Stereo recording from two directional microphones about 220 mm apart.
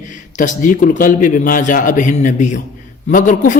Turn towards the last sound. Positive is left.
turn(degrees=35)  # may be behind; listen again after turning